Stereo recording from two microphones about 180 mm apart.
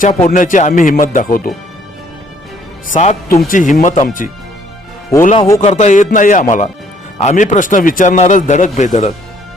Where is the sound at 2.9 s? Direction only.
45° left (ahead or behind).